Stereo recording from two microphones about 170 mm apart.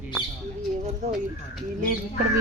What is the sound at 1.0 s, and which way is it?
Speech, 45° right (ahead or behind).